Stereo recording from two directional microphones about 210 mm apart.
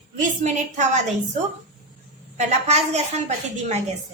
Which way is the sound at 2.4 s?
30° right (ahead or behind).